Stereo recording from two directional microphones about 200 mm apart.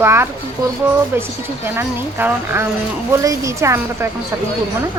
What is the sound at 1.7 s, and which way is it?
Speech, 10° right (ahead or behind).